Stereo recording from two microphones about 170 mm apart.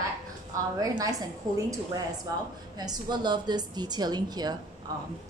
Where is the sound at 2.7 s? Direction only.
25° right (ahead or behind).